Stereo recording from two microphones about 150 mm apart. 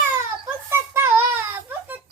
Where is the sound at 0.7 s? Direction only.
15° right (ahead or behind).